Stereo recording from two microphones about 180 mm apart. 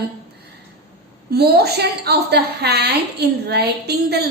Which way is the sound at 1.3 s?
60° right (ahead or behind).